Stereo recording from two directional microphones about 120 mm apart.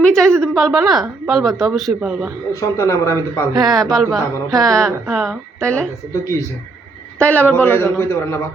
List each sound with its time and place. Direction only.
0.0 s a man's voice: 5° left (ahead or behind); by 2.3 s 10° right (ahead or behind)
2.5 s speech: 25° left (ahead or behind)
3.7 s speech: centre (ahead or behind)
5.6 s a man's voice: 10° left (ahead or behind)
7.2 s a man's voice: 10° left (ahead or behind)